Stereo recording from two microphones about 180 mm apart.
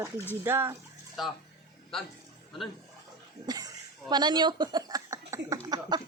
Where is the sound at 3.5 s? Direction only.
20° right (ahead or behind).